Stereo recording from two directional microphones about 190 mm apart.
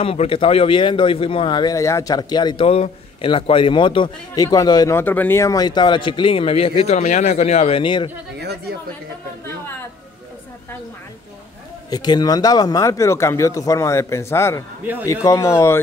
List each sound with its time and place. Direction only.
0.0 s speech: 30° left (ahead or behind)
8.4 s a woman's voice: 60° right (ahead or behind)
11.9 s speech: 20° left (ahead or behind)